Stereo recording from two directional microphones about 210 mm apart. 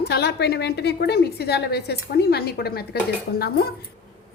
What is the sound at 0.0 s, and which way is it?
A woman's voice, 50° left (ahead or behind).